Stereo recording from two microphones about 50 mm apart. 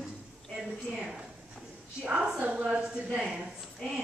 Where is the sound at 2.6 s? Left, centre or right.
Centre.